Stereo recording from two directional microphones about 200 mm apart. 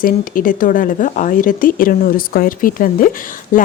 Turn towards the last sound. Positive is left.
turn(degrees=40)  # may be behind; listen again after turning